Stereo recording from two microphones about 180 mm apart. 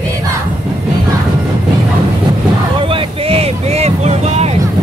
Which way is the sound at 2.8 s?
30° right (ahead or behind).